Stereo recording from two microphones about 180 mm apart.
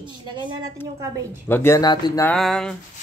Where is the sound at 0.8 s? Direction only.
10° left (ahead or behind).